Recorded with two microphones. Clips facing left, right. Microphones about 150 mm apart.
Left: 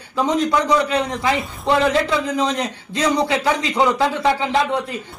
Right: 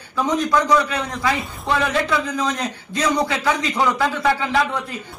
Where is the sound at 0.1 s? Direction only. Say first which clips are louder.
Left 1 dB; 20° left (ahead or behind).